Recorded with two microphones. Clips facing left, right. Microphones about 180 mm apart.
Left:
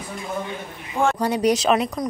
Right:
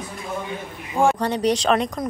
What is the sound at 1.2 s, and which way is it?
Speech, 10° left (ahead or behind).